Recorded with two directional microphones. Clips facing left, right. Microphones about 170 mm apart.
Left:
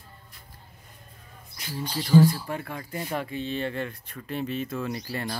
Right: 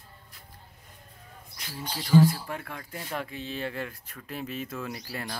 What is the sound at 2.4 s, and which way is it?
Speech, 5° left (ahead or behind).